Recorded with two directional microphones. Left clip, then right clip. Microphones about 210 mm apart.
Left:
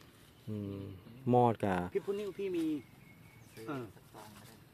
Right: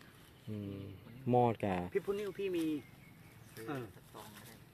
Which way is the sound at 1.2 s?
25° left (ahead or behind).